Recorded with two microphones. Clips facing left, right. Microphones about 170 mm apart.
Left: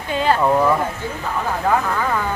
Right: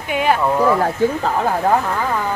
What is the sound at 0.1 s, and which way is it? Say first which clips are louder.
Speech: right 1 dB; 15° right (ahead or behind).